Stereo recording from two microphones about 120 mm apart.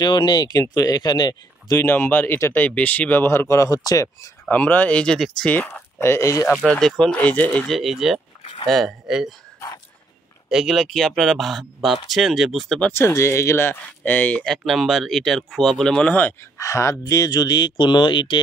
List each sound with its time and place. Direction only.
0.0 s speech: 40° left (ahead or behind)
1.8 s speech: 15° left (ahead or behind)
4.5 s speech: 15° left (ahead or behind)
6.5 s speech: centre (ahead or behind)
7.7 s speech: centre (ahead or behind)
10.5 s speech: 5° right (ahead or behind)
12.9 s speech: 25° left (ahead or behind); by 18.4 s 40° left (ahead or behind)